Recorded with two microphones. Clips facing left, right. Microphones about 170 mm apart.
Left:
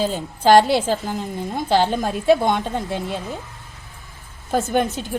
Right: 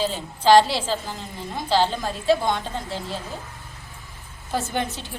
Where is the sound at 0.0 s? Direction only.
50° left (ahead or behind).